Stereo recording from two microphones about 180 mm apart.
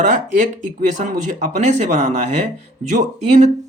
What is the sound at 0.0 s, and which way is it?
Speech, 45° right (ahead or behind).